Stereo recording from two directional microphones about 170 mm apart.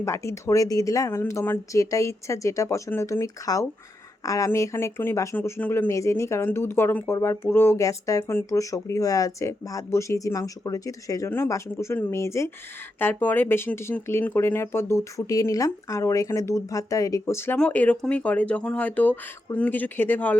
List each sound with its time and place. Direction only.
0.0 s speech: 15° left (ahead or behind)